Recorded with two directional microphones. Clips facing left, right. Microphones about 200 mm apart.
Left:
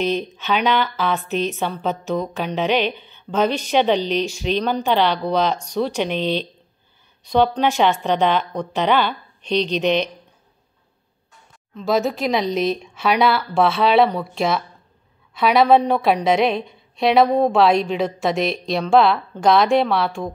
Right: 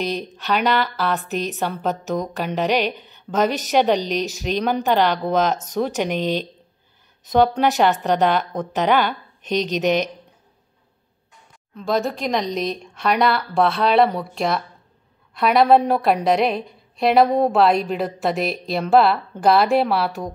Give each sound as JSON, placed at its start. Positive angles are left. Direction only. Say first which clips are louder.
{"t": 0.2, "sound": "a woman's voice", "louder": "even", "side_deg": 0}
{"t": 6.1, "sound": "speech", "louder": "even", "side_deg": -45}
{"t": 7.3, "sound": "a woman's voice", "louder": "right 1 dB", "side_deg": -5}
{"t": 11.7, "sound": "a woman's voice", "louder": "left 2 dB", "side_deg": 0}